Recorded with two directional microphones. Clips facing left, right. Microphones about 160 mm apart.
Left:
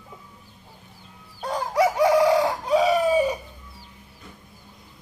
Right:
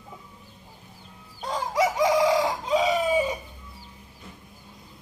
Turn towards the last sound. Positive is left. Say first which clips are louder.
# left 3 dB
turn(degrees=-20)  # may be behind; listen again after turning